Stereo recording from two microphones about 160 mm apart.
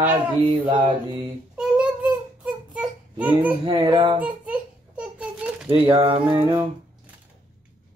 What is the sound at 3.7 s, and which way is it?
Speech, 30° right (ahead or behind).